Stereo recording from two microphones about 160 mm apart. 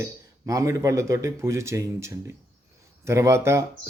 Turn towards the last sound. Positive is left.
turn(degrees=-15)  # may be behind; listen again after turning